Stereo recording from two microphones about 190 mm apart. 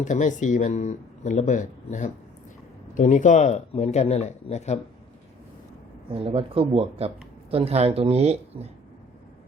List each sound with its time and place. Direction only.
0.0 s speech: 40° left (ahead or behind)
6.1 s speech: 30° right (ahead or behind)